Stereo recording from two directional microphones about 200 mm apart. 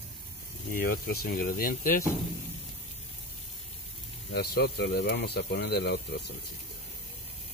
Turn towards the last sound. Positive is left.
turn(degrees=55)  # may be behind; listen again after turning